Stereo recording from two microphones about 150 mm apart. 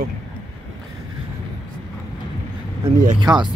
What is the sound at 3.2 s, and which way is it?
Speech, 30° right (ahead or behind).